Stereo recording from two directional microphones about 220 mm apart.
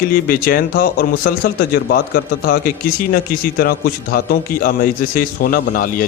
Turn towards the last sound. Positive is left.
turn(degrees=40)  # may be behind; listen again after turning